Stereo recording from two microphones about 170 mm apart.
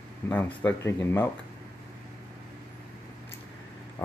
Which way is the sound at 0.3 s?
10° left (ahead or behind).